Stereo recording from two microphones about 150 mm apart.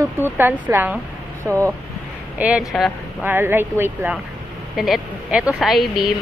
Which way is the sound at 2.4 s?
5° right (ahead or behind).